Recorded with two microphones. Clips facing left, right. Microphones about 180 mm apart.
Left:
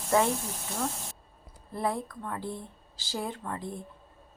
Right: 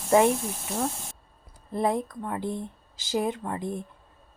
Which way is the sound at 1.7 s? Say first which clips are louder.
Right 5 dB; 20° right (ahead or behind).